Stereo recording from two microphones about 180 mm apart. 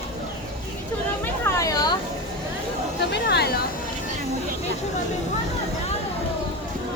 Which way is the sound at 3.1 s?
65° left (ahead or behind).